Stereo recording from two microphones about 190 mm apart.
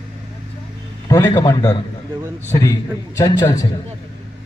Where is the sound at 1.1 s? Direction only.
15° left (ahead or behind).